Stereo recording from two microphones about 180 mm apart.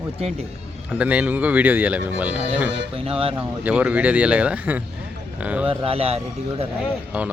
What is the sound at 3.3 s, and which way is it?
Speech, 10° right (ahead or behind).